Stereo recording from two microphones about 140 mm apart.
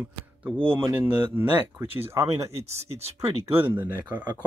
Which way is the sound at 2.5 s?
50° right (ahead or behind).